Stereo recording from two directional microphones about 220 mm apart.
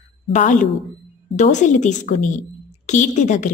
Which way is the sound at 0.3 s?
35° left (ahead or behind).